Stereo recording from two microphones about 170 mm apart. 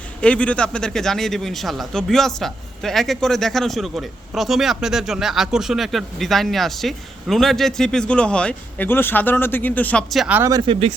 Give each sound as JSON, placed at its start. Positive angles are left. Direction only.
{"t": 0.2, "sound": "a man's voice", "side_deg": 5}
{"t": 10.5, "sound": "speech", "side_deg": -30}